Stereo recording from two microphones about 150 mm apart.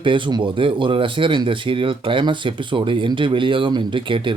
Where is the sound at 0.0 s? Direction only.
30° right (ahead or behind).